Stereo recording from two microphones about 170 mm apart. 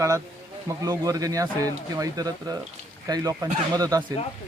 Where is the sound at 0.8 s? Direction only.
20° right (ahead or behind).